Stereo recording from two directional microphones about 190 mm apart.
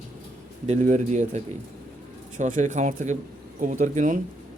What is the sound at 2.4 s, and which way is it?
A man's voice, 40° right (ahead or behind).